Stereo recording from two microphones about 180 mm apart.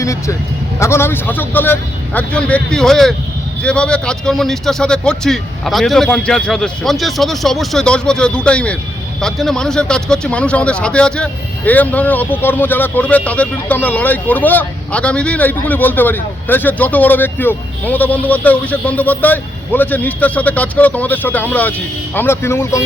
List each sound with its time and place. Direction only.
0.0 s a man's voice: 15° left (ahead or behind)